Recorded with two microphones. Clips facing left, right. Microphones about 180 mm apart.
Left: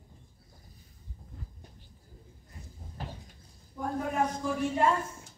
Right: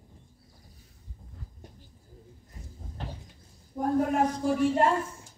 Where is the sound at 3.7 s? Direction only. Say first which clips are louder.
Right 6 dB; 45° right (ahead or behind).